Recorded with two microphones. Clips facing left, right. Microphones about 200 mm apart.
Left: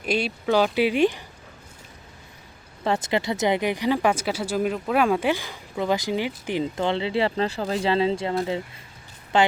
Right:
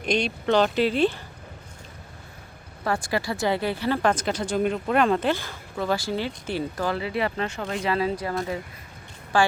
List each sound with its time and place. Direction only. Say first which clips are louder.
0.0 s speech: even; 5° left (ahead or behind)
2.8 s speech: left 2 dB; 20° left (ahead or behind)